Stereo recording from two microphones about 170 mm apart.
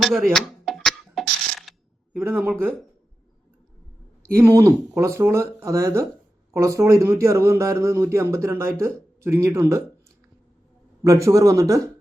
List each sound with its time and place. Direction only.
0.3 s a sound: centre (ahead or behind)
2.1 s a man's voice: 10° right (ahead or behind)
4.4 s a man's voice: 20° right (ahead or behind)
11.0 s speech: 20° right (ahead or behind)